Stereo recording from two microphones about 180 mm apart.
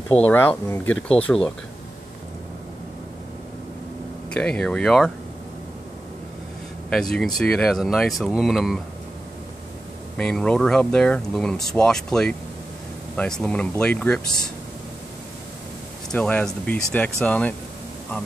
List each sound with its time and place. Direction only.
0.1 s speech: 10° left (ahead or behind)
4.3 s speech: 5° left (ahead or behind)
6.9 s speech: 5° left (ahead or behind)
10.1 s speech: 5° left (ahead or behind)
16.1 s speech: 10° left (ahead or behind)